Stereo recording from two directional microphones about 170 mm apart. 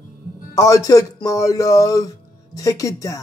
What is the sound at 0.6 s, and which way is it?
A man's voice, 20° left (ahead or behind).